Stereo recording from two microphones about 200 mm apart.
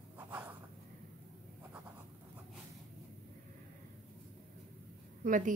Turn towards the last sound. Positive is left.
turn(degrees=-40)  # may be behind; listen again after turning